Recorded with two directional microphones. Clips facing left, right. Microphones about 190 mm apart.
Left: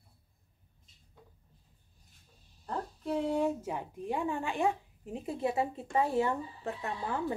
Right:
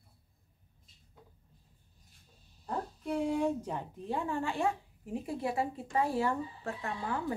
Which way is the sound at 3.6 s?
10° left (ahead or behind).